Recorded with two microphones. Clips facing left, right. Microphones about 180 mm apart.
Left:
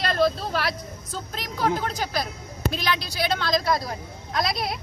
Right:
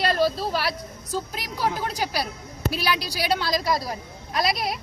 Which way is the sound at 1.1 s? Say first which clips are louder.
Right 4 dB; 10° right (ahead or behind).